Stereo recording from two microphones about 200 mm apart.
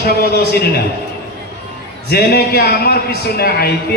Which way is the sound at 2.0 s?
50° left (ahead or behind).